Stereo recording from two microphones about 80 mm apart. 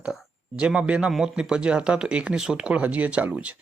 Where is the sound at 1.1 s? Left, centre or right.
Centre.